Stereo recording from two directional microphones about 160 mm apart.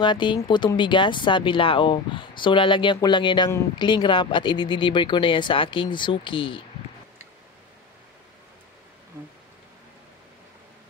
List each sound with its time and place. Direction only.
0.0 s speech: 30° left (ahead or behind)